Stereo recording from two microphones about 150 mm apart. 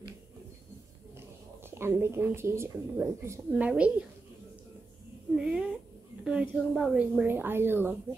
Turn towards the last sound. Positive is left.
turn(degrees=-15)  # may be behind; listen again after turning